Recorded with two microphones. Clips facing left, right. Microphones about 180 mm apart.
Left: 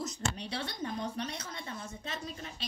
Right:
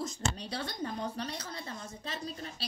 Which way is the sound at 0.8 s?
35° right (ahead or behind).